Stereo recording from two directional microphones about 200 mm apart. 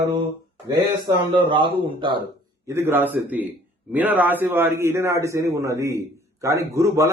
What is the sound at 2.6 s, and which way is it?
A man's voice, 15° right (ahead or behind).